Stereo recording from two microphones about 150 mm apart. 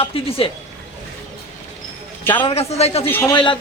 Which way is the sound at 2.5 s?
45° left (ahead or behind).